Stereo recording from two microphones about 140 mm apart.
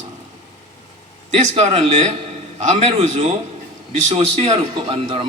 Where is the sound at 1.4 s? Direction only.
55° right (ahead or behind).